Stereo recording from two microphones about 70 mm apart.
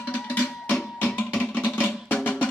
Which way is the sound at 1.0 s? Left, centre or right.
Left.